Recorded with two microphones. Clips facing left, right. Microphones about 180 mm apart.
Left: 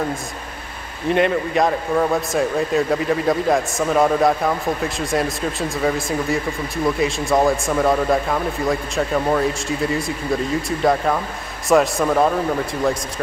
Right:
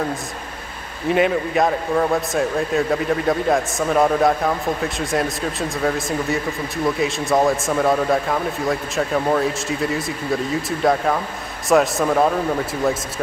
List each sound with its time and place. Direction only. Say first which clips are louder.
1.0 s speech: even; centre (ahead or behind)